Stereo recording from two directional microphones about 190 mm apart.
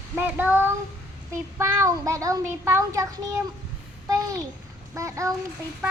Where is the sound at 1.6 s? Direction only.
15° right (ahead or behind).